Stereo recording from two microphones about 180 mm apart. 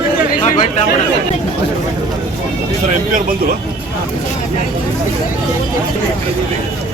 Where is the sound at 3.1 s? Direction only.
50° right (ahead or behind).